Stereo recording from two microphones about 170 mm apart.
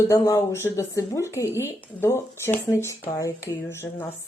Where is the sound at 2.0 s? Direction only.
15° left (ahead or behind).